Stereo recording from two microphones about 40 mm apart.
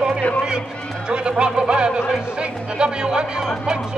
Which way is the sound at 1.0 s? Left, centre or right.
Right.